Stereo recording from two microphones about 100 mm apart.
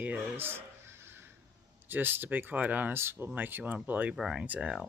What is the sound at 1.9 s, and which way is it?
Speech, 20° right (ahead or behind).